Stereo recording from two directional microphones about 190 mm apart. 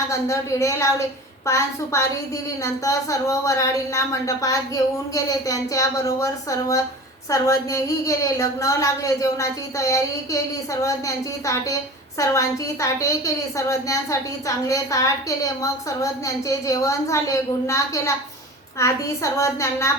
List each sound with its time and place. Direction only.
0.1 s a woman's voice: 15° left (ahead or behind)